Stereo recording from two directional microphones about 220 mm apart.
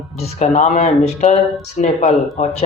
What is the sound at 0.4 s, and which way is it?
Speech, 30° left (ahead or behind).